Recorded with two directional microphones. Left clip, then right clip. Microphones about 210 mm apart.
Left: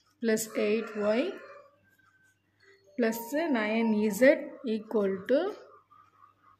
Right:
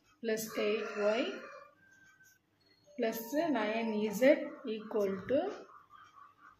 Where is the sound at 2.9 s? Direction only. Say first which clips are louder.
Left 5 dB; 55° left (ahead or behind).